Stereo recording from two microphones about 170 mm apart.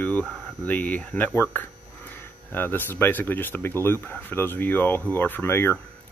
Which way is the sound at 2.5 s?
10° left (ahead or behind).